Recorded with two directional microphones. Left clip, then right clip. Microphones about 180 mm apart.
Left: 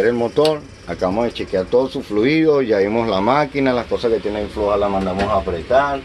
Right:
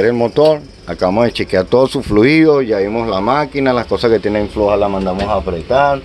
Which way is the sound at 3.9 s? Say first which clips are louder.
Right 6 dB; 45° right (ahead or behind).